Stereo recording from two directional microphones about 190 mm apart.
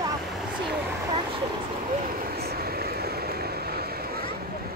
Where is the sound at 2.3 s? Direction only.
55° right (ahead or behind).